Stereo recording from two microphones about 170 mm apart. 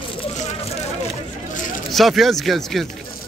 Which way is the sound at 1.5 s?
50° left (ahead or behind).